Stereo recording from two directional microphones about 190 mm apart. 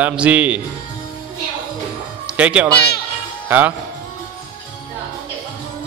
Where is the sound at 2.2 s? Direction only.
5° right (ahead or behind).